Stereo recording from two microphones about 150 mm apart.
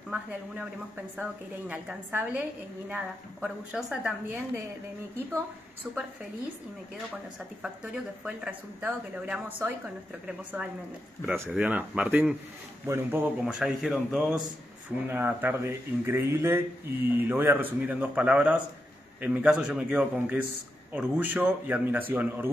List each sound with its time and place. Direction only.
1.1 s speech: 5° right (ahead or behind)
5.9 s speech: 10° right (ahead or behind)
7.6 s speech: 5° right (ahead or behind)
15.0 s speech: 15° right (ahead or behind)